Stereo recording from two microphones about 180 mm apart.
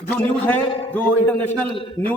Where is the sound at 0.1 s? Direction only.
10° left (ahead or behind).